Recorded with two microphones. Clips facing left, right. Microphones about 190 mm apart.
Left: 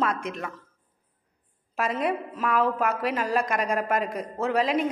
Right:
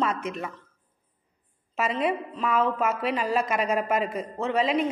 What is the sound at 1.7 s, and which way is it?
A woman's voice, centre (ahead or behind).